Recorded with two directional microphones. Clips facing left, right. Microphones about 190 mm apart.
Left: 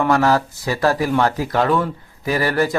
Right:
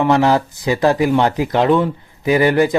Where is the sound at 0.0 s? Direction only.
20° right (ahead or behind).